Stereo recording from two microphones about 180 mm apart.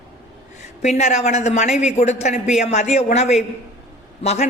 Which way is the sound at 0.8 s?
40° left (ahead or behind).